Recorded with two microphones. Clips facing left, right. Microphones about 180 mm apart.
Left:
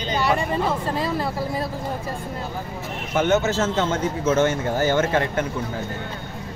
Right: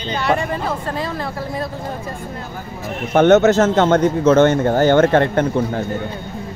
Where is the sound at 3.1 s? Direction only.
65° right (ahead or behind).